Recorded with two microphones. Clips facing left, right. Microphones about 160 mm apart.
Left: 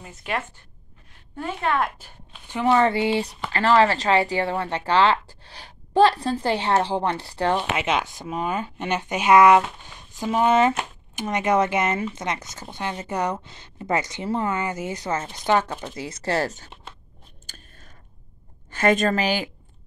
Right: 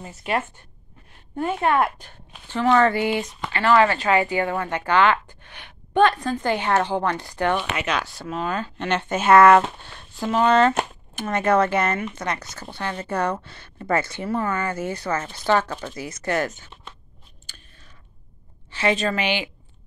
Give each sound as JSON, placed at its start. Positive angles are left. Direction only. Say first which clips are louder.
{"t": 2.0, "sound": "speech", "louder": "right 2 dB", "side_deg": 5}
{"t": 17.5, "sound": "a sound", "louder": "left 2 dB", "side_deg": 45}
{"t": 18.7, "sound": "a woman's voice", "louder": "left 3 dB", "side_deg": 50}